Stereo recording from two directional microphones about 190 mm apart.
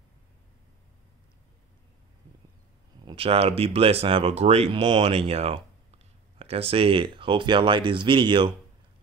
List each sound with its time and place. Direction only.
3.1 s speech: 30° right (ahead or behind)